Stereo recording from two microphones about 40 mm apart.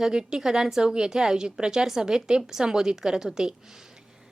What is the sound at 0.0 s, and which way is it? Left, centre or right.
Speech, centre.